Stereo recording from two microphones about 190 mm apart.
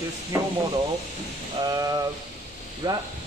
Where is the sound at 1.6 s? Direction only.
20° right (ahead or behind).